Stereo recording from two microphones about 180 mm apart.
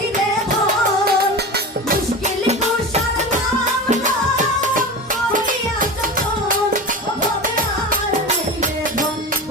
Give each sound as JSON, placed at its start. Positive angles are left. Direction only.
{"t": 1.0, "sound": "music", "side_deg": -60}
{"t": 2.2, "sound": "music", "side_deg": -40}